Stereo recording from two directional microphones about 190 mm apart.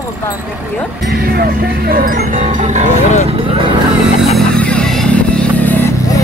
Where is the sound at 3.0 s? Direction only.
40° left (ahead or behind).